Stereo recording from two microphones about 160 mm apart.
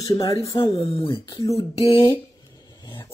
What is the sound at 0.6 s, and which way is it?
Speech, 35° left (ahead or behind).